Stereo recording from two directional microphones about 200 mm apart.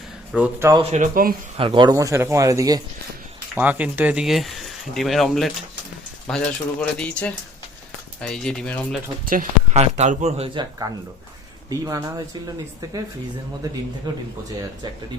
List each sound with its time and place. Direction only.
0.3 s a man's voice: 5° right (ahead or behind)
0.7 s speech: 30° right (ahead or behind); by 1.4 s 45° right (ahead or behind)
1.5 s a man's voice: 25° right (ahead or behind); by 9.0 s 5° left (ahead or behind)
9.2 s speech: 45° right (ahead or behind); by 12.2 s 20° right (ahead or behind)
14.1 s speech: 20° right (ahead or behind)